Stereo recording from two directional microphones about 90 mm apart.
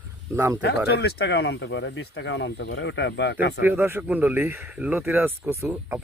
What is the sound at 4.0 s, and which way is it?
Speech, 15° right (ahead or behind).